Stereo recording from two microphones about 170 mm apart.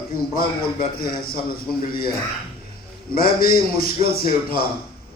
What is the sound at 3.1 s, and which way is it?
A man's voice, 60° left (ahead or behind).